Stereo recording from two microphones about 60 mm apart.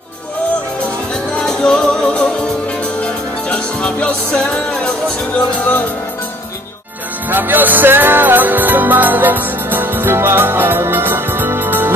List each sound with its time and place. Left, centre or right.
1.4 s music: centre
7.2 s music: right